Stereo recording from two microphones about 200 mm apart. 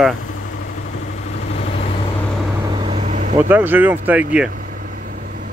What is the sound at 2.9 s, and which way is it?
Vehicle, 35° right (ahead or behind).